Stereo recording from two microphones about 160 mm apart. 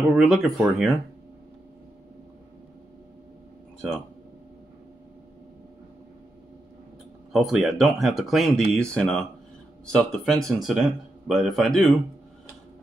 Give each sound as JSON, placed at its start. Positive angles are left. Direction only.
{"t": 0.1, "sound": "speech", "side_deg": 0}
{"t": 7.3, "sound": "speech", "side_deg": 0}